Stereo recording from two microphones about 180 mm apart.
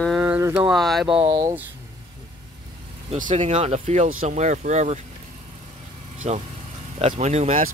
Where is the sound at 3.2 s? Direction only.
40° right (ahead or behind).